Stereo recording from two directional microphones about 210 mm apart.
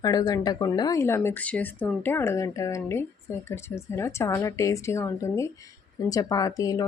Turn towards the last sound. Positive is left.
turn(degrees=15)  # may be behind; listen again after turning